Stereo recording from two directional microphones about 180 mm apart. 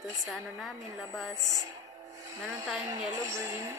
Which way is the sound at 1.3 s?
20° right (ahead or behind).